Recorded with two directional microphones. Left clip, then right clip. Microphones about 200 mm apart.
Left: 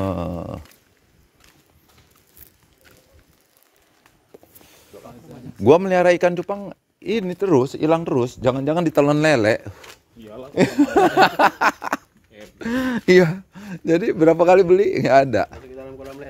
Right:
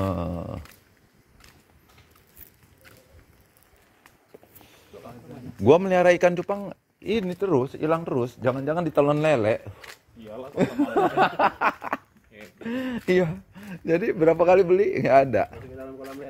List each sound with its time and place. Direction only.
0.0 s a sound: 40° left (ahead or behind)
5.6 s speech: 30° left (ahead or behind); by 6.8 s 15° left (ahead or behind)
7.0 s speech: 30° left (ahead or behind)